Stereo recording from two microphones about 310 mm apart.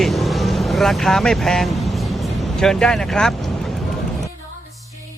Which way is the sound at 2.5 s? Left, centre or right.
Centre.